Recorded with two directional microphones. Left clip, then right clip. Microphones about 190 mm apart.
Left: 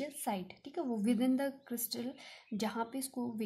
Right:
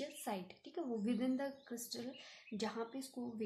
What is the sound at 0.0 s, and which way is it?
A woman's voice, 25° left (ahead or behind).